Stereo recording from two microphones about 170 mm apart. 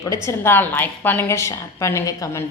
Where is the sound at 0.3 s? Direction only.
15° left (ahead or behind).